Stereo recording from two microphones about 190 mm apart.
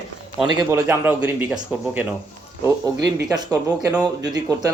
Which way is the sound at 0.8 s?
5° right (ahead or behind).